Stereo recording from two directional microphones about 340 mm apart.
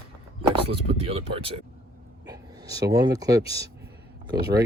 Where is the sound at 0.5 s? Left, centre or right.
Centre.